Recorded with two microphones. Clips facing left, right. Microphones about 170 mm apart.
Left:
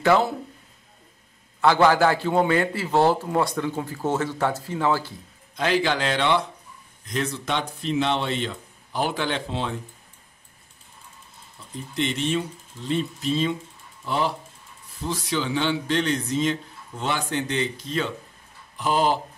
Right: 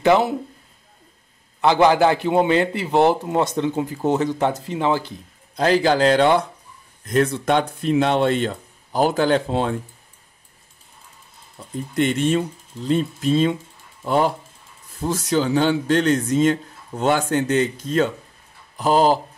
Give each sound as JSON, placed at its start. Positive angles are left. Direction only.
{"t": 0.0, "sound": "a man's voice", "side_deg": -20}
{"t": 1.6, "sound": "a man's voice", "side_deg": -20}
{"t": 5.6, "sound": "speech", "side_deg": -40}
{"t": 11.9, "sound": "speech", "side_deg": -50}